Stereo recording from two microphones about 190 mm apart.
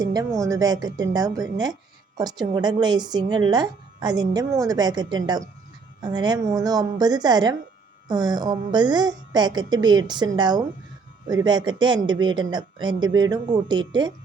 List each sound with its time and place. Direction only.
0.0 s a woman's voice: 20° right (ahead or behind)